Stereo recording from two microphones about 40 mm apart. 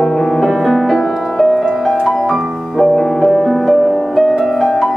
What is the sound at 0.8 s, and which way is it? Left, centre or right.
Music, centre.